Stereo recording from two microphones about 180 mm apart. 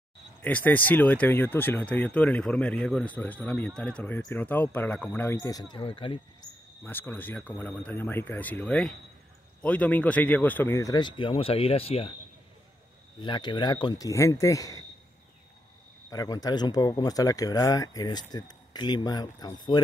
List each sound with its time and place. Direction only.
0.4 s speech: 10° left (ahead or behind); by 6.2 s 30° left (ahead or behind)
6.8 s speech: 10° left (ahead or behind); by 12.1 s 30° left (ahead or behind)
13.2 s speech: 25° left (ahead or behind)
16.1 s speech: 20° left (ahead or behind)